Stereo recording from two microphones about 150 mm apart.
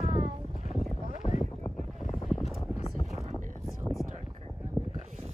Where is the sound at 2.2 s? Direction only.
Centre (ahead or behind).